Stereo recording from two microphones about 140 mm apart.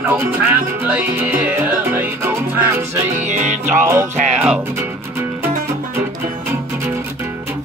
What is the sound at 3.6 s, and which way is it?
Music, 15° right (ahead or behind).